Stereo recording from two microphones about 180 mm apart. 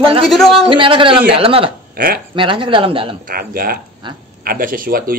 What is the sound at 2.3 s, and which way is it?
Speech, 30° right (ahead or behind).